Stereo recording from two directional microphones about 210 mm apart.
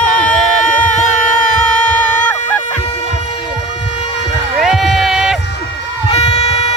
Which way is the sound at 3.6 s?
60° left (ahead or behind).